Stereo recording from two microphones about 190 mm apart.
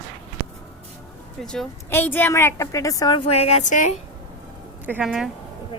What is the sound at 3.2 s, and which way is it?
Speech, 35° left (ahead or behind).